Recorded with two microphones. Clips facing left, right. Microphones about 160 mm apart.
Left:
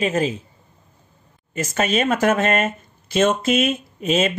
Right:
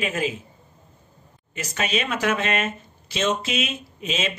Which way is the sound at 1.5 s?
45° left (ahead or behind).